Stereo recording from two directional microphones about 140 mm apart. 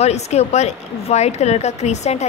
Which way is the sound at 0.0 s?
50° left (ahead or behind).